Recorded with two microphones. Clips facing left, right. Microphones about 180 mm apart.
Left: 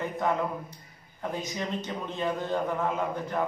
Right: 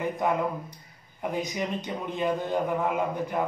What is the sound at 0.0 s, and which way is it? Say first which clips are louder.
A man's voice: right 2 dB; 15° right (ahead or behind).